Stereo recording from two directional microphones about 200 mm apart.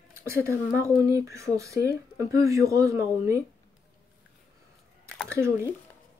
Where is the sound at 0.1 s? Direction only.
15° right (ahead or behind).